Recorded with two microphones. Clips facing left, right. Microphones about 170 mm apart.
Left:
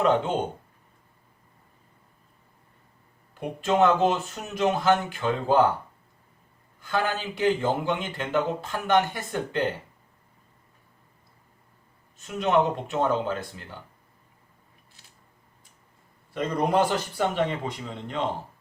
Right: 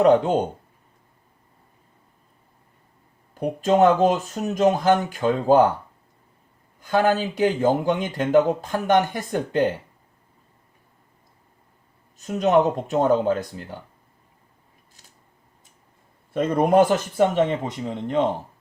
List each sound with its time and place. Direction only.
0.0 s speech: 40° right (ahead or behind)
3.3 s speech: 40° right (ahead or behind)
6.8 s speech: 45° right (ahead or behind)
12.1 s speech: 40° right (ahead or behind)
16.3 s speech: 50° right (ahead or behind)
17.3 s speech: 20° right (ahead or behind)
17.6 s speech: 45° right (ahead or behind)